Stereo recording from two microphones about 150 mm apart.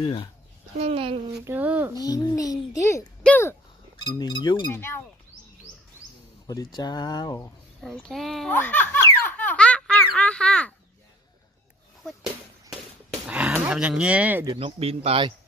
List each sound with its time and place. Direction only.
0.0 s speech: 35° left (ahead or behind)
0.7 s a man's voice: 40° right (ahead or behind)
1.4 s speech: 10° right (ahead or behind)
2.0 s speech: 25° left (ahead or behind)
4.0 s speech: 30° left (ahead or behind)
4.7 s speech: 15° left (ahead or behind)
6.4 s speech: 25° left (ahead or behind)
7.8 s a child's voice: 5° left (ahead or behind)
8.6 s baby laughter: 10° left (ahead or behind)
13.3 s speech: 10° right (ahead or behind)
14.5 s a man's voice: 40° right (ahead or behind)